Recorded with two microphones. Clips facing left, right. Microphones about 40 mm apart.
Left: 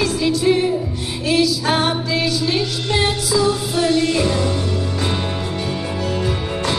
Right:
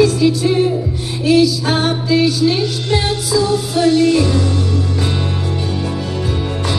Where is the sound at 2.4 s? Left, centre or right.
Centre.